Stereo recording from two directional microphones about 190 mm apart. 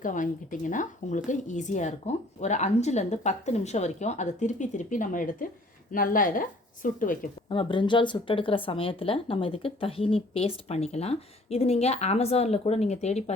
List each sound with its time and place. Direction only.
0.0 s a woman's voice: 45° left (ahead or behind)
7.4 s speech: 25° left (ahead or behind)